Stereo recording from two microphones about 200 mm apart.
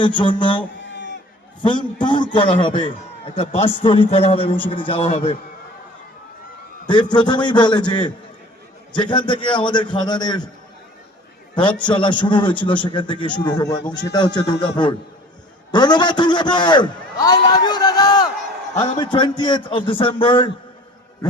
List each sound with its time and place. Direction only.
0.0 s a man's voice: 25° left (ahead or behind)
0.8 s a sound: 60° left (ahead or behind)
1.6 s a man's voice: 25° left (ahead or behind)
6.9 s a man's voice: 20° left (ahead or behind)
11.9 s a man's voice: 25° left (ahead or behind)